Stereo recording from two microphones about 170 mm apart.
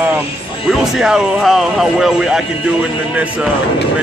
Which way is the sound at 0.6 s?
Centre (ahead or behind).